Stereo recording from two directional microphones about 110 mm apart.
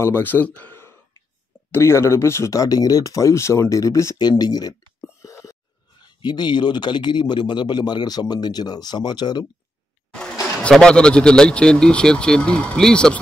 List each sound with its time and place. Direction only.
0.0 s a man's voice: 20° left (ahead or behind); by 4.7 s 35° left (ahead or behind)
5.0 s a sound: 25° left (ahead or behind)
5.9 s a man's voice: 40° left (ahead or behind)
10.6 s speech: 5° left (ahead or behind)